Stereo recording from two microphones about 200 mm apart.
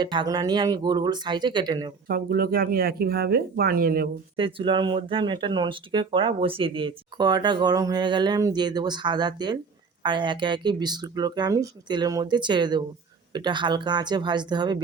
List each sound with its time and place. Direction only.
0.0 s speech: 20° right (ahead or behind)
2.0 s speech: 45° right (ahead or behind)
4.4 s speech: 25° right (ahead or behind)